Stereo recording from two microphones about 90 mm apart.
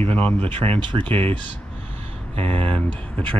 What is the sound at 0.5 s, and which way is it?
Speech, 85° right.